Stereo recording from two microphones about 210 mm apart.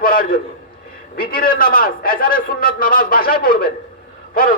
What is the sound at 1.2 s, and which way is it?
A man's voice, 45° left (ahead or behind).